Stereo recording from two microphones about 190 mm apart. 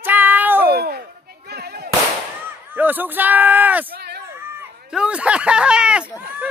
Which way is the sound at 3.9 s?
60° right (ahead or behind).